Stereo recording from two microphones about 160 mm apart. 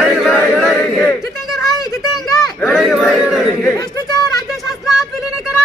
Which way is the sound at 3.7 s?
25° left (ahead or behind).